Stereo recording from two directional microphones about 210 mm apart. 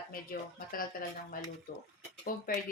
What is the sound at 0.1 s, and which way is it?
Speech, 45° left (ahead or behind).